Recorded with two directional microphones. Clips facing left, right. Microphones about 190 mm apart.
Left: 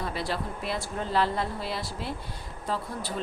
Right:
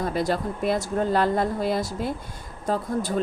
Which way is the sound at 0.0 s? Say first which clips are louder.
Right 7 dB; 45° right (ahead or behind).